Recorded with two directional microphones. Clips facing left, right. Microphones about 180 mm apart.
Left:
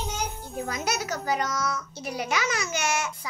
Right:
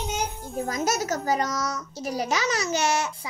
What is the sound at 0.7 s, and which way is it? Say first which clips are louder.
A child's voice: right 4 dB; 40° right (ahead or behind).